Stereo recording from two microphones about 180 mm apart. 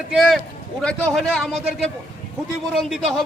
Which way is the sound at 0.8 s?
5° left (ahead or behind).